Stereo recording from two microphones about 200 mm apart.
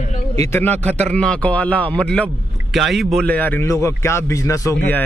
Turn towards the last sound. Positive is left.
turn(degrees=15)  # may be behind; listen again after turning